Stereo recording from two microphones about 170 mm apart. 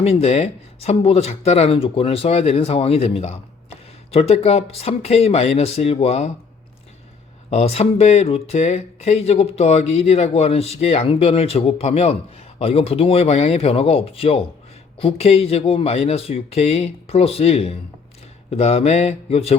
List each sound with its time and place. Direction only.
0.0 s speech: 35° left (ahead or behind)
7.5 s speech: 40° left (ahead or behind)